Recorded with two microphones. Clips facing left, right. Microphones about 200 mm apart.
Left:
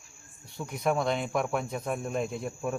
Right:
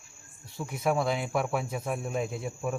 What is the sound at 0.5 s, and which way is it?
Speech, 5° right (ahead or behind).